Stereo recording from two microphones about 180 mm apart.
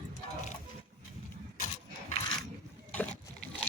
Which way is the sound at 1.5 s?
40° left (ahead or behind).